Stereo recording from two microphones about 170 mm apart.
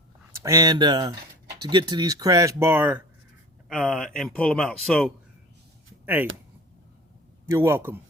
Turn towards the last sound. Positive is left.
turn(degrees=-15)  # may be behind; listen again after turning